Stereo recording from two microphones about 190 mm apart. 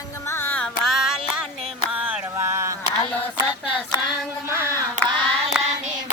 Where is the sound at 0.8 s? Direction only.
Centre (ahead or behind).